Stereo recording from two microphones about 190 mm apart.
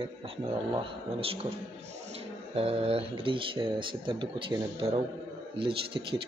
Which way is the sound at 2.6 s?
30° right (ahead or behind).